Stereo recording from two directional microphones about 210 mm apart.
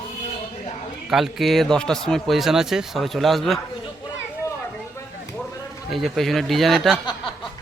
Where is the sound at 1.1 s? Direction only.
Centre (ahead or behind).